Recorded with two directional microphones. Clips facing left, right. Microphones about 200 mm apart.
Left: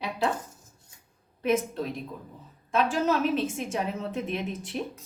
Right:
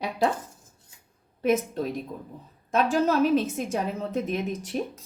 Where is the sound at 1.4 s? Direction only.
45° right (ahead or behind).